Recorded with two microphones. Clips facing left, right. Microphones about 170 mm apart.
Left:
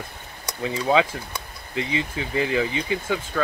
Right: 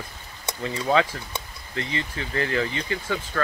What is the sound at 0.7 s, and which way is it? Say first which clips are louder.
Speech: left 2 dB; 15° left (ahead or behind).